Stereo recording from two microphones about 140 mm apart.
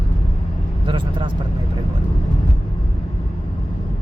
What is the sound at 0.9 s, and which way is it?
Speech, 35° right (ahead or behind).